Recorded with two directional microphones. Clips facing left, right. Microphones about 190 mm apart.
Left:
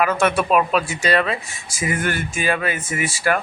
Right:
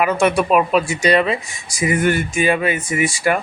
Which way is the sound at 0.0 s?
15° right (ahead or behind).